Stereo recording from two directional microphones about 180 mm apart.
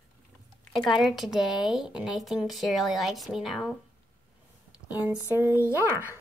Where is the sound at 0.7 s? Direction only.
Centre (ahead or behind).